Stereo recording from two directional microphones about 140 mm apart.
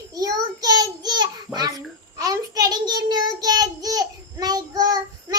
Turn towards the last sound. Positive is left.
turn(degrees=-30)  # may be behind; listen again after turning